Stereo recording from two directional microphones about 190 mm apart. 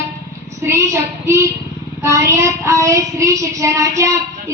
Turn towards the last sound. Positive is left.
turn(degrees=-15)  # may be behind; listen again after turning